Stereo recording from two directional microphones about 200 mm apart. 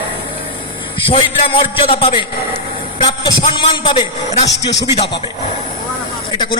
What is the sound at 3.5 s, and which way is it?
Speech, 25° left (ahead or behind).